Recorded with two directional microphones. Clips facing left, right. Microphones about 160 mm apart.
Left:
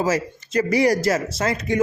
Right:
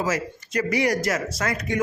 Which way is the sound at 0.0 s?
30° left (ahead or behind).